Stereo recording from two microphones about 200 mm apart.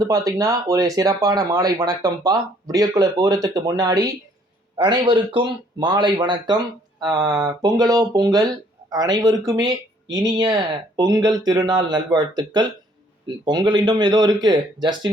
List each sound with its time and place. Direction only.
0.0 s speech: 20° right (ahead or behind)